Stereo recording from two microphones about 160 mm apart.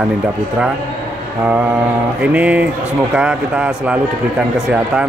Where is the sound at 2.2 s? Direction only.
10° right (ahead or behind).